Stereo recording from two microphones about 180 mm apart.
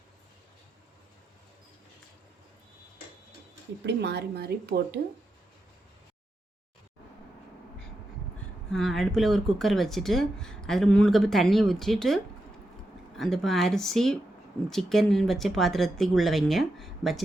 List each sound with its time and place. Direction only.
3.8 s a woman's voice: 70° right (ahead or behind)
8.7 s speech: centre (ahead or behind)